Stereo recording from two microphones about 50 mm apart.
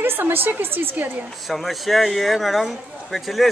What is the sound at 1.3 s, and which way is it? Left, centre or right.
Speech, centre.